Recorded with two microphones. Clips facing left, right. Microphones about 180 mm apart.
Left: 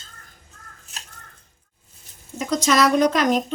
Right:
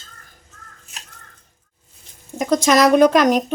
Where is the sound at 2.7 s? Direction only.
45° right (ahead or behind).